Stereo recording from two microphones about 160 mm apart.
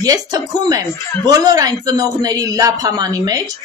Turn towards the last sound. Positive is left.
turn(degrees=-25)  # may be behind; listen again after turning